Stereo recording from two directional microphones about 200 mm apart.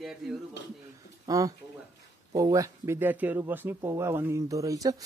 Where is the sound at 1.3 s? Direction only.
15° right (ahead or behind).